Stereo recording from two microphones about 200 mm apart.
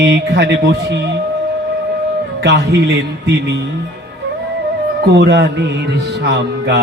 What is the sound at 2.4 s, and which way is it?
Speech, 55° right (ahead or behind).